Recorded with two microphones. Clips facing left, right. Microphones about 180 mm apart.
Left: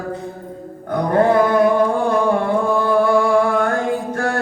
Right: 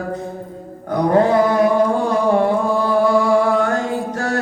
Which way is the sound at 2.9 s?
55° left (ahead or behind).